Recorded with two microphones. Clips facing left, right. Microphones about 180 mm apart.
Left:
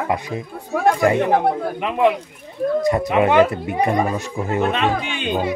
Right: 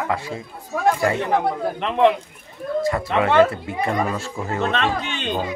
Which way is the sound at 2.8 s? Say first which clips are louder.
Left 2 dB; 20° left (ahead or behind).